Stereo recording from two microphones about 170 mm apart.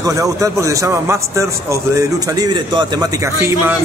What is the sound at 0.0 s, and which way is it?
Speech, 20° right (ahead or behind).